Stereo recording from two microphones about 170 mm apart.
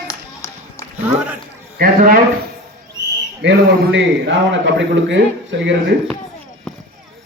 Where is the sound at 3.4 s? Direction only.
90° right.